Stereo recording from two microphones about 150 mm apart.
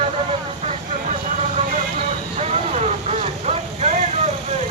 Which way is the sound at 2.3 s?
45° right (ahead or behind).